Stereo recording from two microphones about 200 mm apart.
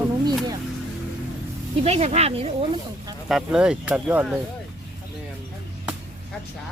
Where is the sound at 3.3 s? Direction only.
Centre (ahead or behind).